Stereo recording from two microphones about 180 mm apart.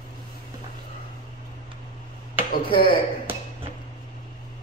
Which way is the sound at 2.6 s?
30° left (ahead or behind).